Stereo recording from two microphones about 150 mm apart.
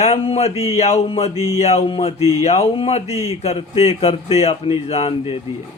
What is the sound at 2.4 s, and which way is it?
Speech, 45° left (ahead or behind).